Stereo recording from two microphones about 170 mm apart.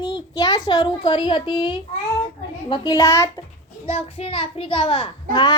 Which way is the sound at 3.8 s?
35° left (ahead or behind).